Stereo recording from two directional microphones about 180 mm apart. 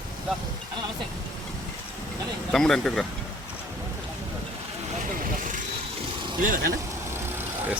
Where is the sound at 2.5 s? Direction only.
5° left (ahead or behind).